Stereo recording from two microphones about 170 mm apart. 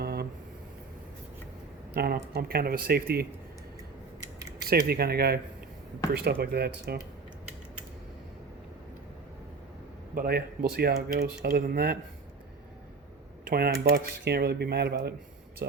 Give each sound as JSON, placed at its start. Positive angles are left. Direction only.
{"t": 0.0, "sound": "a sound", "side_deg": -70}
{"t": 1.9, "sound": "speech", "side_deg": -65}
{"t": 4.7, "sound": "speech", "side_deg": -65}
{"t": 10.2, "sound": "speech", "side_deg": -65}
{"t": 13.5, "sound": "speech", "side_deg": -65}